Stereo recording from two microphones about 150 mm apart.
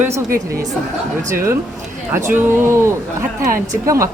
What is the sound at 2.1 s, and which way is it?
Speech, 15° right (ahead or behind).